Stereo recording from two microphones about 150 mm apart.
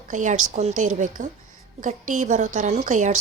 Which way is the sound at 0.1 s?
55° right (ahead or behind).